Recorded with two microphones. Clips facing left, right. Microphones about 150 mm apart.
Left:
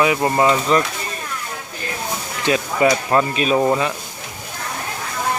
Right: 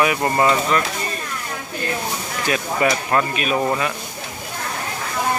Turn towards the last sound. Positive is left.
turn(degrees=25)  # may be behind; listen again after turning